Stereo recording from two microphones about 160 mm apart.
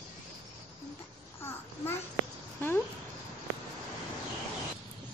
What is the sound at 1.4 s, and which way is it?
Babbling, 15° left (ahead or behind).